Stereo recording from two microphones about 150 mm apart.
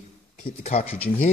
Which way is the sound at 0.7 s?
45° left (ahead or behind).